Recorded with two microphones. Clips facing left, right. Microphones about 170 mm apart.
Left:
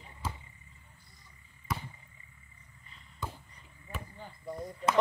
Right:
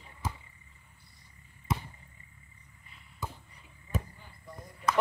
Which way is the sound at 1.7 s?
25° right (ahead or behind).